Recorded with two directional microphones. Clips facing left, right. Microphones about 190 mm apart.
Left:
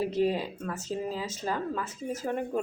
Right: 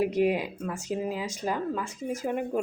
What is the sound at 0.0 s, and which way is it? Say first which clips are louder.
Speech: right 2 dB; 15° right (ahead or behind).